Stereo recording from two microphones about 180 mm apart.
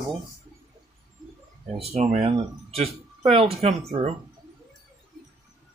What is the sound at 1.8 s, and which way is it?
Speech, 35° right (ahead or behind).